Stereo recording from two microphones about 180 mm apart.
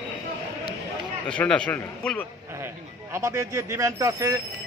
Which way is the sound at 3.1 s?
15° right (ahead or behind).